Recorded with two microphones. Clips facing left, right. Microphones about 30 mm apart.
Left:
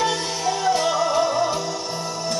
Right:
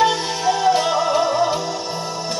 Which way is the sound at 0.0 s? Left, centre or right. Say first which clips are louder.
Right 5 dB; centre.